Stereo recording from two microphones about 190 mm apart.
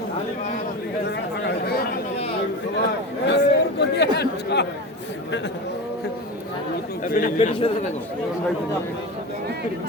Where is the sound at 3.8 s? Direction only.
60° left (ahead or behind).